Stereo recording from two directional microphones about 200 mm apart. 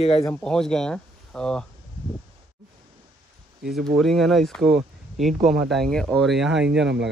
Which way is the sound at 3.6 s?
Centre (ahead or behind).